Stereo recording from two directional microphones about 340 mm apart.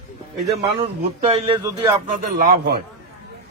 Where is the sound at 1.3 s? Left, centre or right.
Centre.